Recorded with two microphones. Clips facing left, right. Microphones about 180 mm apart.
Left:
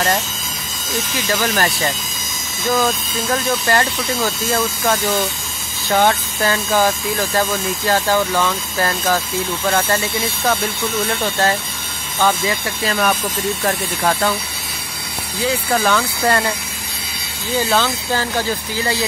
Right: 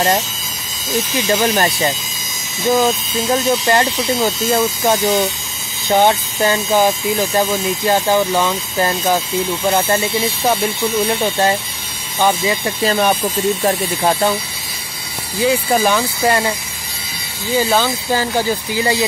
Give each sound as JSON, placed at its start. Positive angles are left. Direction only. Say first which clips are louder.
{"t": 0.9, "sound": "speech", "louder": "right 4 dB", "side_deg": -20}
{"t": 15.7, "sound": "speech", "louder": "right 2 dB", "side_deg": -20}
{"t": 17.6, "sound": "speech", "louder": "right 2 dB", "side_deg": -10}